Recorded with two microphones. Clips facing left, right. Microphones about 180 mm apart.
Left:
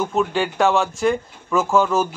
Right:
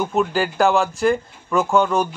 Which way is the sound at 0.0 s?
Centre (ahead or behind).